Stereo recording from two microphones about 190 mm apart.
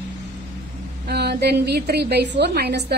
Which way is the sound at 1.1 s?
60° right (ahead or behind).